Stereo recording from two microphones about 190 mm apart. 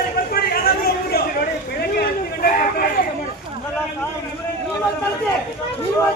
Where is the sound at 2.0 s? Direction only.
50° left (ahead or behind).